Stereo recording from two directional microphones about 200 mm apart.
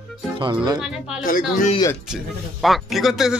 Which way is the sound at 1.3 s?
45° left (ahead or behind).